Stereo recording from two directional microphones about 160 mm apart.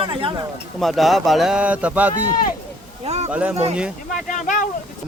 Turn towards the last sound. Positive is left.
turn(degrees=50)  # may be behind; listen again after turning